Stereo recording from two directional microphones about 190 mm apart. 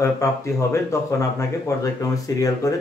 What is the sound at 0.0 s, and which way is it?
Speech, 15° left (ahead or behind).